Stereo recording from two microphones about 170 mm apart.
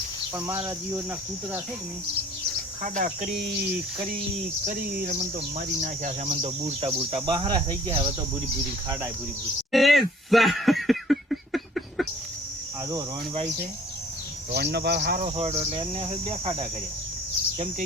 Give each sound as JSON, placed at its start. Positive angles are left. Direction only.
{"t": 0.3, "sound": "speech", "side_deg": -15}
{"t": 2.8, "sound": "speech", "side_deg": -50}
{"t": 4.6, "sound": "cricket", "side_deg": -55}
{"t": 5.1, "sound": "speech", "side_deg": -45}
{"t": 7.4, "sound": "cricket", "side_deg": -30}
{"t": 9.7, "sound": "a sound", "side_deg": 0}
{"t": 14.5, "sound": "speech", "side_deg": -75}
{"t": 15.2, "sound": "speech", "side_deg": -35}